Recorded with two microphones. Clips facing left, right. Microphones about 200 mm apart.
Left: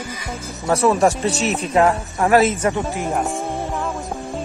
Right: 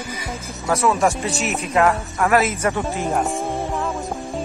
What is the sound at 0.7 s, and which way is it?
Speech, 30° left (ahead or behind).